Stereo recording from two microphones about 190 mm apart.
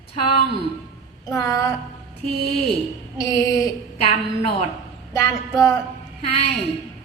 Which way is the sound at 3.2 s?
15° left (ahead or behind).